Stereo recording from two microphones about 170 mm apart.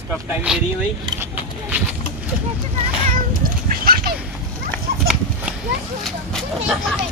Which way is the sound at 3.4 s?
65° right (ahead or behind).